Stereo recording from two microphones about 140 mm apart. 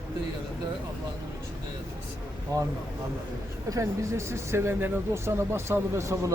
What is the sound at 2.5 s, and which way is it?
Speech, 25° right (ahead or behind).